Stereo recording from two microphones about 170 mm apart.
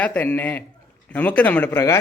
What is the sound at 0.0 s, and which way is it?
Speech, 10° left (ahead or behind).